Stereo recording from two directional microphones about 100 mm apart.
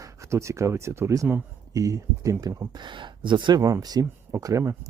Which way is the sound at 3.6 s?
35° right (ahead or behind).